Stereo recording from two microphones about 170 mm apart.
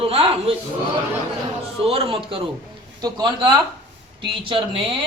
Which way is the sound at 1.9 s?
35° right (ahead or behind).